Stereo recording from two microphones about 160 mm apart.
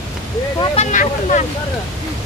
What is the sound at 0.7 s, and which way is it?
Speech, 50° left (ahead or behind).